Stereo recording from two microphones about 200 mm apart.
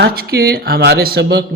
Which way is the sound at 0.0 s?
50° right (ahead or behind).